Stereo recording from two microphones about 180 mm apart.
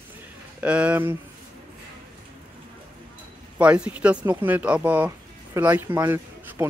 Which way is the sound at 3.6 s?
5° right (ahead or behind).